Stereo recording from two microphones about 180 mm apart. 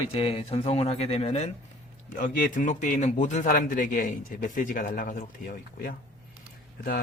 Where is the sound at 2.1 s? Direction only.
45° left (ahead or behind).